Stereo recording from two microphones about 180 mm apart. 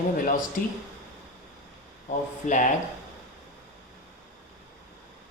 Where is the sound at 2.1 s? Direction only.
45° left (ahead or behind).